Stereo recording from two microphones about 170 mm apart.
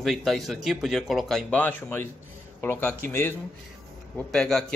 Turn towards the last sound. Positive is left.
turn(degrees=5)  # may be behind; listen again after turning